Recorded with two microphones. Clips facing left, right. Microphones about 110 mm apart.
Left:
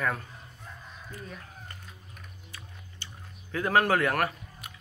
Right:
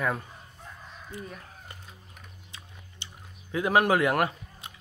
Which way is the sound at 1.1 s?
15° right (ahead or behind).